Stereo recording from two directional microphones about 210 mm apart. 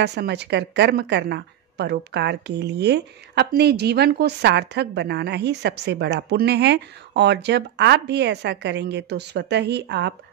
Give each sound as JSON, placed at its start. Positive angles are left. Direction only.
{"t": 0.0, "sound": "a woman's voice", "side_deg": -55}